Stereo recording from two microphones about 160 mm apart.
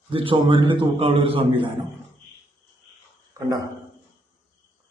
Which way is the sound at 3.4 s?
20° right (ahead or behind).